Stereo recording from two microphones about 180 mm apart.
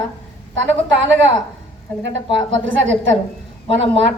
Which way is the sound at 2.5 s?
90° right.